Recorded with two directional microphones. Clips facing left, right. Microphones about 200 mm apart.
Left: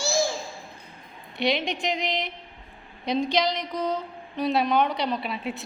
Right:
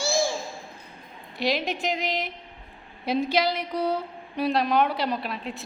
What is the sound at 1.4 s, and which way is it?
A woman's voice, centre (ahead or behind).